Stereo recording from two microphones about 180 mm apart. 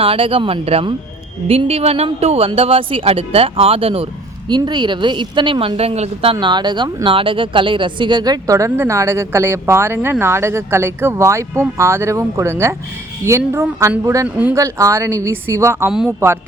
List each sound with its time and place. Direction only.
0.0 s speech: 30° right (ahead or behind)
6.3 s speech: 25° right (ahead or behind)
15.9 s speech: 5° right (ahead or behind)